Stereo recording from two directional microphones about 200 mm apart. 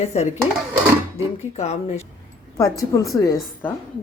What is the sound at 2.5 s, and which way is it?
A woman's voice, 15° left (ahead or behind).